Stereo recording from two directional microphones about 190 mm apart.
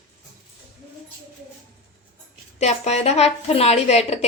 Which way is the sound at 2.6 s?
35° left (ahead or behind).